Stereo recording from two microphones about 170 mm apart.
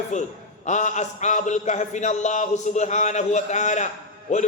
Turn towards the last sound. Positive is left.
turn(degrees=45)  # may be behind; listen again after turning